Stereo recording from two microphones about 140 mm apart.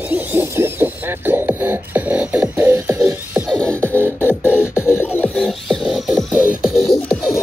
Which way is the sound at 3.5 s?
5° left (ahead or behind).